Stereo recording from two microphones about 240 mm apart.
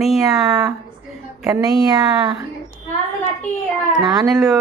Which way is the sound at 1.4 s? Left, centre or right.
Centre.